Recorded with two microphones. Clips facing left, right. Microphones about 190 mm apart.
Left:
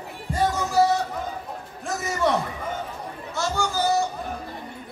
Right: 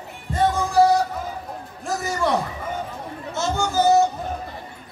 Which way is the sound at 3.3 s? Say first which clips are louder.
Right 3 dB; 20° right (ahead or behind).